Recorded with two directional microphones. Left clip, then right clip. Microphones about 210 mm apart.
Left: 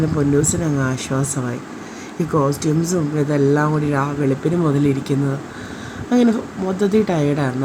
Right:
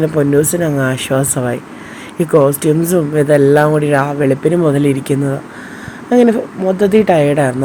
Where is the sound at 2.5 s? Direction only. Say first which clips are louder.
Right 7 dB; 30° right (ahead or behind).